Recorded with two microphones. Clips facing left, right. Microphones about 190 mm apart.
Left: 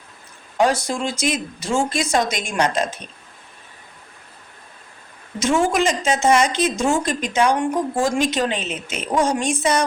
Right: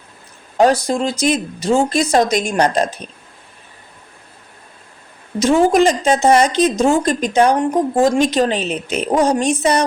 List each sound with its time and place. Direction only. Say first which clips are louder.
0.5 s a woman's voice: right 5 dB; 35° right (ahead or behind)
5.4 s a woman's voice: right 6 dB; 35° right (ahead or behind)